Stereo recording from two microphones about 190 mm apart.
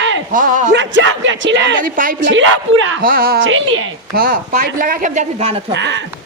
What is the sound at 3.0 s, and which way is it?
Speech, 50° right (ahead or behind).